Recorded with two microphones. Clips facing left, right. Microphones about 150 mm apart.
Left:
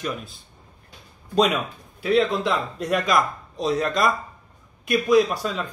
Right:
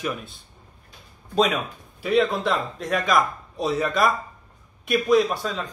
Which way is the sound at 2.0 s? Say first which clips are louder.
Left 1 dB; centre (ahead or behind).